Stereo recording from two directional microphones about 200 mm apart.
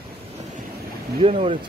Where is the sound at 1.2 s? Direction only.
25° right (ahead or behind).